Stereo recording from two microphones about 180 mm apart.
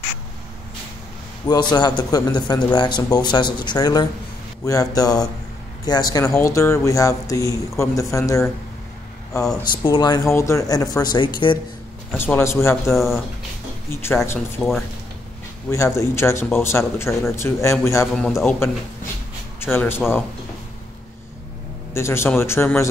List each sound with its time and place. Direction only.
1.5 s a man's voice: 25° left (ahead or behind)
9.7 s a man's voice: 25° left (ahead or behind)
12.2 s a man's voice: 10° left (ahead or behind)
12.9 s speech: centre (ahead or behind)
14.0 s a man's voice: 15° left (ahead or behind)
14.6 s speech: centre (ahead or behind)
15.7 s a man's voice: 15° left (ahead or behind)
18.1 s a man's voice: 5° left (ahead or behind)
21.9 s a man's voice: 15° left (ahead or behind)